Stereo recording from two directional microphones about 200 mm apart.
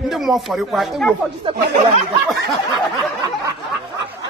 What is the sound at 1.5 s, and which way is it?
Speech, 25° right (ahead or behind).